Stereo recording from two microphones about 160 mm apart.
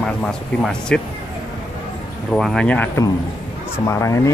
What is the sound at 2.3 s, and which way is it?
Speech, centre (ahead or behind).